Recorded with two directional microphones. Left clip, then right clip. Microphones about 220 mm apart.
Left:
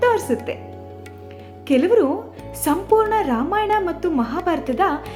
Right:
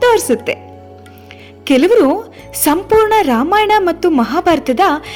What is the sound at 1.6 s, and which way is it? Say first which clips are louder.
A woman's voice: right 6 dB; 45° right (ahead or behind).